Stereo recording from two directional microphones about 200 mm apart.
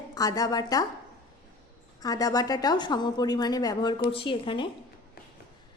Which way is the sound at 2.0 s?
20° left (ahead or behind).